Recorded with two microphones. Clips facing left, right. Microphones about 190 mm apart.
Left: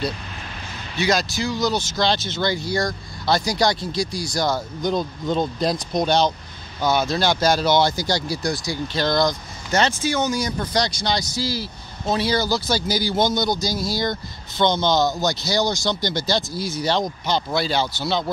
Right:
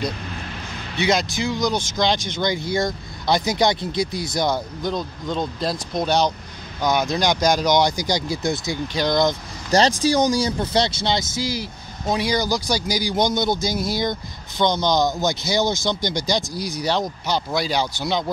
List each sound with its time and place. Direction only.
0.9 s speech: 20° right (ahead or behind)
4.8 s speech: 5° left (ahead or behind); by 9.3 s 15° right (ahead or behind)
9.7 s speech: 35° right (ahead or behind); by 18.2 s 15° right (ahead or behind)